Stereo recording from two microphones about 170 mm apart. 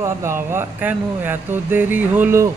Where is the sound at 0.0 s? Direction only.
15° right (ahead or behind).